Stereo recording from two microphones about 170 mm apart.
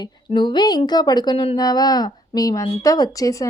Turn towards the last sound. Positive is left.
turn(degrees=20)  # may be behind; listen again after turning